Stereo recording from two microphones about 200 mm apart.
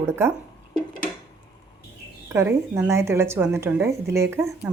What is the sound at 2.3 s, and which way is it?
A woman's voice, 15° right (ahead or behind).